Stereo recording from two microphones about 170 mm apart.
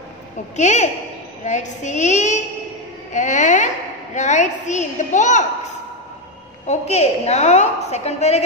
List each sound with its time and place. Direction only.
0.6 s a woman's voice: 45° left (ahead or behind)